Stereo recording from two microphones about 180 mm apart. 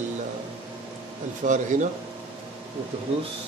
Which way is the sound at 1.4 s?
50° right (ahead or behind).